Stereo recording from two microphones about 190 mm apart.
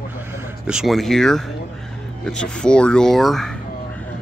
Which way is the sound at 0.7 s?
Centre (ahead or behind).